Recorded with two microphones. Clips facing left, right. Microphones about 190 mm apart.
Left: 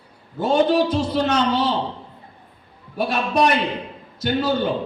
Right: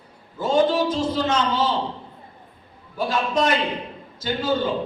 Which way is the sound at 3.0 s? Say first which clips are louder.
Left 2 dB; 70° left (ahead or behind).